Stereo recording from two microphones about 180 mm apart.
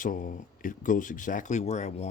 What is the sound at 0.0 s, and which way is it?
Speech, 50° left (ahead or behind).